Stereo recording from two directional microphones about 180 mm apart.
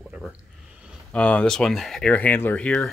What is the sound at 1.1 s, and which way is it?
Speech, 5° left (ahead or behind).